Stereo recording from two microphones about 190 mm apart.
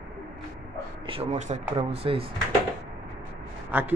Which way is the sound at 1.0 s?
35° right (ahead or behind).